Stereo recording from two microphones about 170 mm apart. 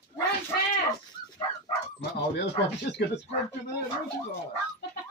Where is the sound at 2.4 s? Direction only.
85° left.